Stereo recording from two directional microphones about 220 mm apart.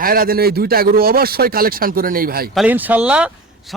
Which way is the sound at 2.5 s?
5° right (ahead or behind).